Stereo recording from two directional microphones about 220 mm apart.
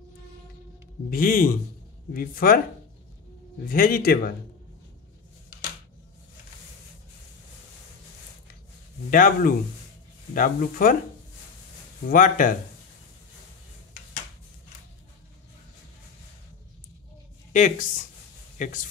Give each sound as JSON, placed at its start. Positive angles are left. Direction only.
{"t": 1.1, "sound": "speech", "side_deg": 40}
{"t": 3.6, "sound": "speech", "side_deg": 40}
{"t": 9.1, "sound": "speech", "side_deg": 40}
{"t": 12.1, "sound": "speech", "side_deg": 35}
{"t": 17.5, "sound": "speech", "side_deg": 35}